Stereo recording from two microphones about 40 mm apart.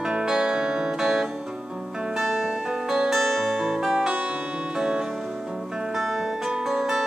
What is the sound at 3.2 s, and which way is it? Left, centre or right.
Music, centre.